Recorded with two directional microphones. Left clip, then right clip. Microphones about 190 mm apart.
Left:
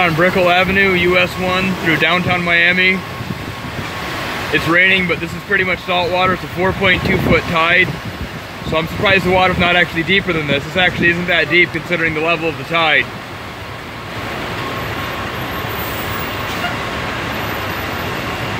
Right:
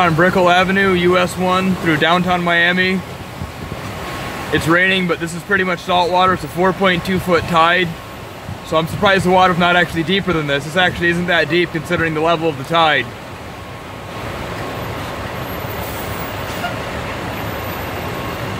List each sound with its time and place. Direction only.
0.0 s speech: 10° right (ahead or behind)
4.7 s speech: 15° right (ahead or behind)